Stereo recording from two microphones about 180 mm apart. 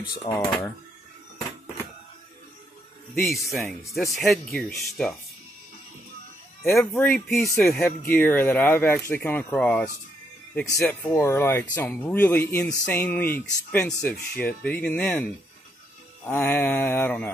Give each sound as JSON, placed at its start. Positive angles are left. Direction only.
{"t": 0.3, "sound": "speech", "side_deg": 20}
{"t": 3.2, "sound": "speech", "side_deg": 0}
{"t": 6.9, "sound": "speech", "side_deg": 5}
{"t": 16.3, "sound": "speech", "side_deg": 10}